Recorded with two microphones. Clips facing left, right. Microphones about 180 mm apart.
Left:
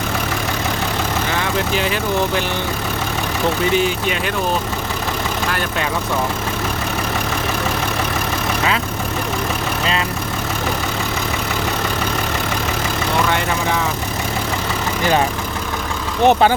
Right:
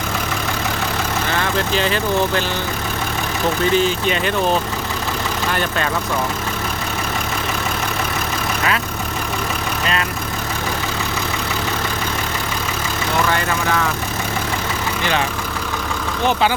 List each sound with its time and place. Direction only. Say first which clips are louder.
1.4 s speech: right 1 dB; 10° left (ahead or behind)
3.8 s speech: right 1 dB; 10° left (ahead or behind)
5.5 s speech: right 4 dB; 5° left (ahead or behind)
13.3 s speech: even; 15° left (ahead or behind)
16.2 s speech: left 5 dB; 50° left (ahead or behind)